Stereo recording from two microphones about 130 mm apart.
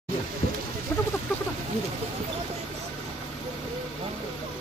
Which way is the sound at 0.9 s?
20° left (ahead or behind).